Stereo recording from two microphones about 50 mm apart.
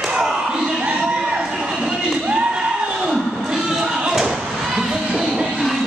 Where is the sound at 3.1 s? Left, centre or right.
Centre.